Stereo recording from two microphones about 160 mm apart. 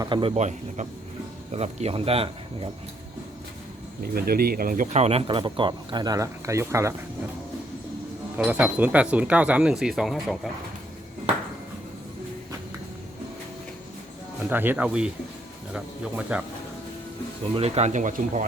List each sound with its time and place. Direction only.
0.0 s speech: 30° right (ahead or behind)
4.0 s speech: 70° right (ahead or behind)
5.0 s speech: 35° right (ahead or behind); by 6.9 s 15° right (ahead or behind)
8.4 s speech: 10° right (ahead or behind)
14.5 s speech: 10° right (ahead or behind)
17.5 s speech: 40° right (ahead or behind)